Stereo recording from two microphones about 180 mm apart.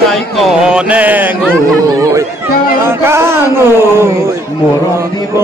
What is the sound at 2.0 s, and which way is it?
Music, 20° right (ahead or behind).